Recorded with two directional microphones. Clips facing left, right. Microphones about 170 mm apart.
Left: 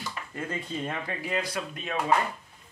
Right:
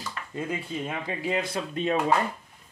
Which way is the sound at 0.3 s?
20° right (ahead or behind).